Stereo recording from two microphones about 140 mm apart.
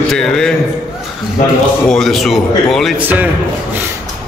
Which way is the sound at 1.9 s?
Centre (ahead or behind).